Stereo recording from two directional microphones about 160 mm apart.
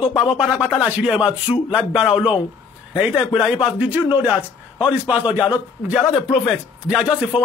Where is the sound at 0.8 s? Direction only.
5° right (ahead or behind).